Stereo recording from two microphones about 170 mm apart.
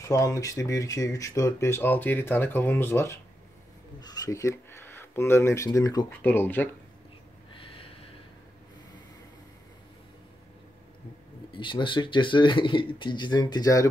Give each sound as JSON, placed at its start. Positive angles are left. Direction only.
{"t": 0.0, "sound": "speech", "side_deg": 20}
{"t": 7.5, "sound": "snort", "side_deg": 35}
{"t": 11.5, "sound": "speech", "side_deg": 30}